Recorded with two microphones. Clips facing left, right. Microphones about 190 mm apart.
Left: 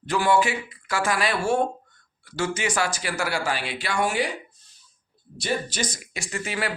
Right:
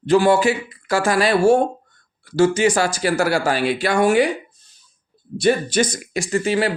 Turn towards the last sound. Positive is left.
turn(degrees=-30)  # may be behind; listen again after turning